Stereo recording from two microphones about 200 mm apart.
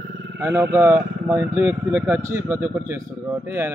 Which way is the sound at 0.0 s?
60° right (ahead or behind).